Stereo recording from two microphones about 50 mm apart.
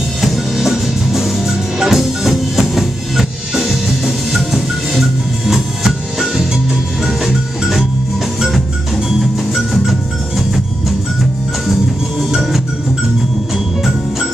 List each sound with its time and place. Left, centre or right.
0.2 s music: centre
11.6 s music: centre